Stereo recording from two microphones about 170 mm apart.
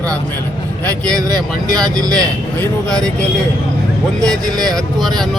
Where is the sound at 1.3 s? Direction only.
20° right (ahead or behind).